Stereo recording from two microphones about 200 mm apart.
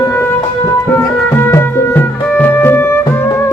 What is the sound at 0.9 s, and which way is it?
Music, 10° left (ahead or behind).